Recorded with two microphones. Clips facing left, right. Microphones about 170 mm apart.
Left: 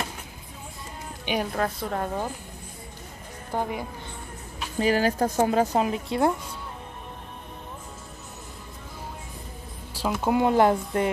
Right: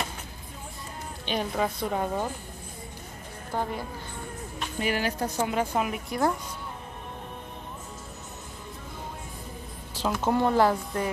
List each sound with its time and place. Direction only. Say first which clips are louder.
1.2 s speech: left 2 dB; 10° left (ahead or behind)
1.5 s a woman's voice: even; centre (ahead or behind)
3.5 s speech: left 2 dB; 10° left (ahead or behind)
4.7 s a woman's voice: left 6 dB; 35° left (ahead or behind)
9.9 s speech: left 2 dB; 5° left (ahead or behind)